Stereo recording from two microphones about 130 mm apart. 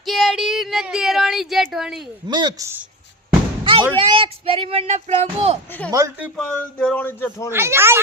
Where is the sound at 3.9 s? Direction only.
40° right (ahead or behind).